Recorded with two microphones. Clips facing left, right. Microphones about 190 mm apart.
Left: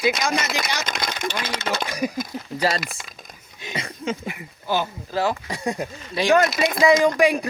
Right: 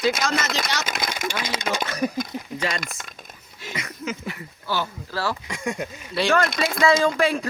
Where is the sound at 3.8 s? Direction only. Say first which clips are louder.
Left 4 dB; 30° left (ahead or behind).